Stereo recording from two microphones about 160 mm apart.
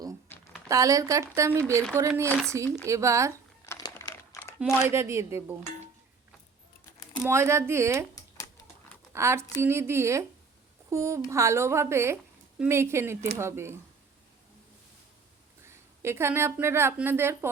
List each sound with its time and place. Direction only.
0.7 s a woman's voice: 20° right (ahead or behind)
3.7 s crumpling: 20° left (ahead or behind)
4.9 s speech: 20° right (ahead or behind)
7.2 s speech: 15° right (ahead or behind)
9.1 s speech: 15° right (ahead or behind)
15.6 s a woman's voice: 15° right (ahead or behind)